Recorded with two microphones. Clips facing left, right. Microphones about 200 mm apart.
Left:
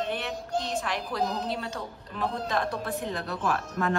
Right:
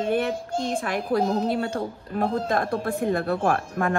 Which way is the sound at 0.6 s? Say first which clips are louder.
Right 5 dB; 50° right (ahead or behind).